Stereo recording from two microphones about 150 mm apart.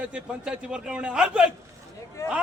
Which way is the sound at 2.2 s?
20° left (ahead or behind).